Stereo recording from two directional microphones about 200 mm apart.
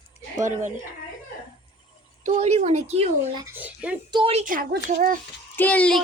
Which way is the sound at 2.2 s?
35° right (ahead or behind).